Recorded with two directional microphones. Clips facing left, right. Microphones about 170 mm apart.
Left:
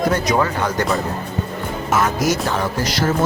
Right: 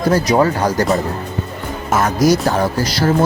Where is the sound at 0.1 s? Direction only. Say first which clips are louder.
Right 5 dB; 35° right (ahead or behind).